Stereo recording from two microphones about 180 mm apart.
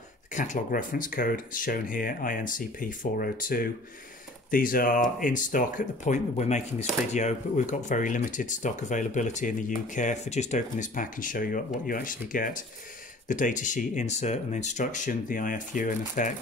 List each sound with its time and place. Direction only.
0.3 s speech: 45° left (ahead or behind)